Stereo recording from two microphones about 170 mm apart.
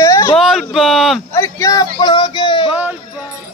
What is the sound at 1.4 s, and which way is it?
Speech, 20° left (ahead or behind).